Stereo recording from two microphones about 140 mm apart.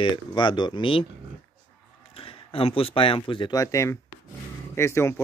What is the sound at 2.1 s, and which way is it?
Speech, 40° left (ahead or behind).